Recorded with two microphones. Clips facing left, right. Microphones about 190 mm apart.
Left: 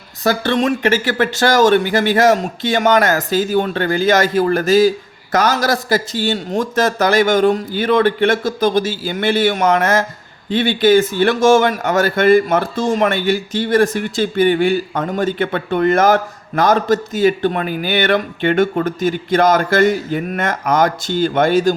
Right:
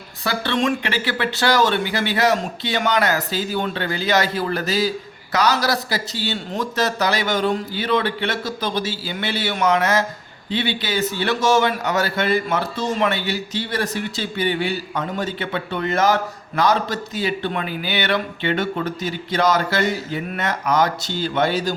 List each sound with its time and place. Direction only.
0.3 s a man's voice: 45° left (ahead or behind)